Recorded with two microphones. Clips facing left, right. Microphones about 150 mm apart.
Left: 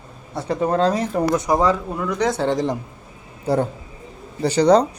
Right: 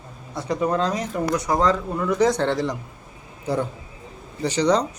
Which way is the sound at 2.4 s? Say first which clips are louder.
Left 2 dB; 15° left (ahead or behind).